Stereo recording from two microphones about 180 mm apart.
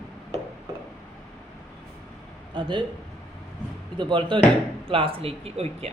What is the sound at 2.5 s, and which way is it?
Speech, 25° right (ahead or behind).